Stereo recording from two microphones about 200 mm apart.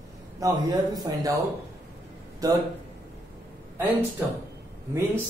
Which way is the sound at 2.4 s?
15° right (ahead or behind).